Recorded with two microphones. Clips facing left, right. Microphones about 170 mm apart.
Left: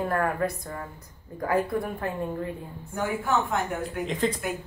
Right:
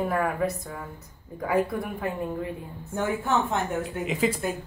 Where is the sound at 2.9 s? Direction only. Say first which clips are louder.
Right 1 dB; 25° right (ahead or behind).